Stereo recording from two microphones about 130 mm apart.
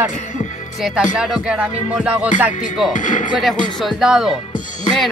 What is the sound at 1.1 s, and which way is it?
Music, 5° right (ahead or behind).